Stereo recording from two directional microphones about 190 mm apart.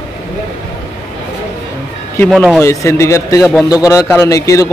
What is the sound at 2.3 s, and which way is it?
A man's voice, 5° left (ahead or behind).